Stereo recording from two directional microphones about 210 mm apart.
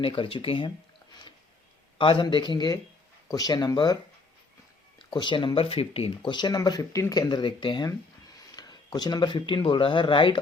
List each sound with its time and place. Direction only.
0.0 s speech: 25° left (ahead or behind)
2.0 s speech: 25° left (ahead or behind)
4.9 s speech: 20° left (ahead or behind)